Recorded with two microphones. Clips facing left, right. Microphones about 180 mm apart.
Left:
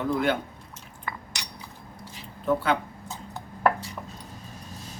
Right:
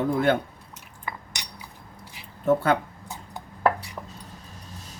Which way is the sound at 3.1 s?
15° right (ahead or behind).